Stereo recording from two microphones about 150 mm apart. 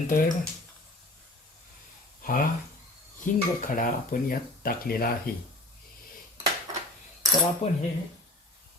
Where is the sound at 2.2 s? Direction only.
65° left (ahead or behind); by 5.3 s 85° left.